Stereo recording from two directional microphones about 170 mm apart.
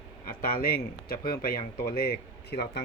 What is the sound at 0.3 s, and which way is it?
Speech, 60° left (ahead or behind).